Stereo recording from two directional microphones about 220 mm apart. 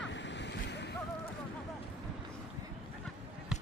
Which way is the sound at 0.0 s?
55° left (ahead or behind).